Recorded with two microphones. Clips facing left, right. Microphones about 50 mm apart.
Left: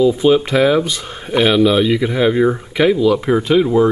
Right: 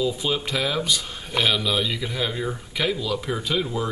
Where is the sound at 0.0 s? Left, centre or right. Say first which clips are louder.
Left 12 dB; left.